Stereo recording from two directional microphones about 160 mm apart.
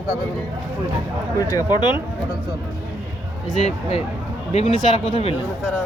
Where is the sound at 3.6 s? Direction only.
40° left (ahead or behind).